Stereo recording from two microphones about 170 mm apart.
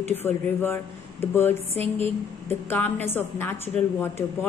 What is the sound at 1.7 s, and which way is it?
Speech, 35° right (ahead or behind).